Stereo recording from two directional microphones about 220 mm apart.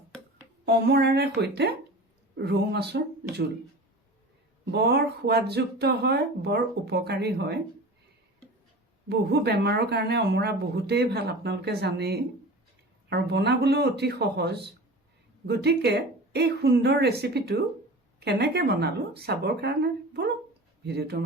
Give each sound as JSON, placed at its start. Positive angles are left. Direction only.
{"t": 0.6, "sound": "speech", "side_deg": -50}
{"t": 4.7, "sound": "speech", "side_deg": -50}
{"t": 9.0, "sound": "speech", "side_deg": -50}